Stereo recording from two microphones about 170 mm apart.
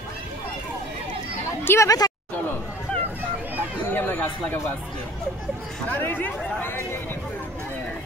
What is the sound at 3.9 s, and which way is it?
Chatter, 10° left (ahead or behind).